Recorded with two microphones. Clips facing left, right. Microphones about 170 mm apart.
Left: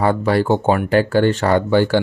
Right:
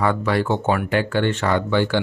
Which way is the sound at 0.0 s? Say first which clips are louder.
Left 4 dB; 35° left (ahead or behind).